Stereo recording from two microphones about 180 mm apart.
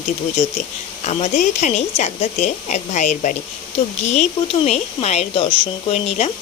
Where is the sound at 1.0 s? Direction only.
40° left (ahead or behind).